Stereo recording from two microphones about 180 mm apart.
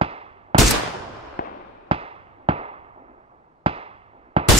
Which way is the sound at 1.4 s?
50° left (ahead or behind).